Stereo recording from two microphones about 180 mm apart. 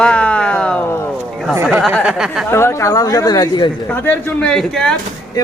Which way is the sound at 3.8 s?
10° left (ahead or behind).